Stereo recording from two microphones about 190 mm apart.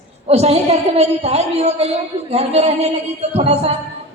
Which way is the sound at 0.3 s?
30° right (ahead or behind).